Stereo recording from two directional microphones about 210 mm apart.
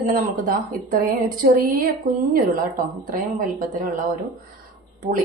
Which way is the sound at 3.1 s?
40° right (ahead or behind).